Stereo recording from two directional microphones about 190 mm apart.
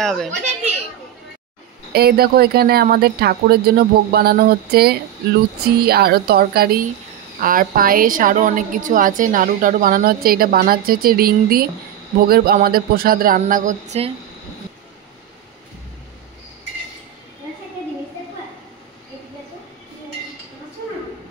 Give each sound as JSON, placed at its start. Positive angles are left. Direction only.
{"t": 0.0, "sound": "a child's voice", "side_deg": 0}
{"t": 1.9, "sound": "a woman's voice", "side_deg": -55}